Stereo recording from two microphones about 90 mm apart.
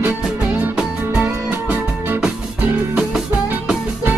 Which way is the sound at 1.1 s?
20° right (ahead or behind).